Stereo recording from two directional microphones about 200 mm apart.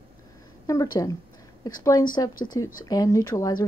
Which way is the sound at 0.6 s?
15° left (ahead or behind).